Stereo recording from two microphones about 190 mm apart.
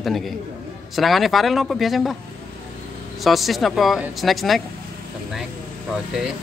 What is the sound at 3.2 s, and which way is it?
Speech, centre (ahead or behind).